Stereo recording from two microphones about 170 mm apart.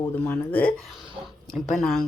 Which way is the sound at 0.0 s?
10° left (ahead or behind).